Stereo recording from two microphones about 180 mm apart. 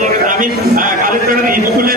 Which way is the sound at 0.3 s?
50° right (ahead or behind).